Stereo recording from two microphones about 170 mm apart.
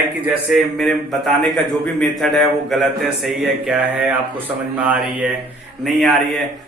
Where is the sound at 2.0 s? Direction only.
Centre (ahead or behind).